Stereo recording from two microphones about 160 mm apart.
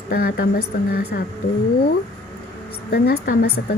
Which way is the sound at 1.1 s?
90° left.